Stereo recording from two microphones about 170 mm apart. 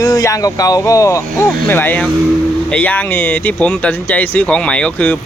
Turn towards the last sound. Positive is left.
turn(degrees=10)  # may be behind; listen again after turning